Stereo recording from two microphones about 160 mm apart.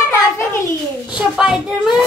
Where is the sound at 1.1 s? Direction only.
5° right (ahead or behind).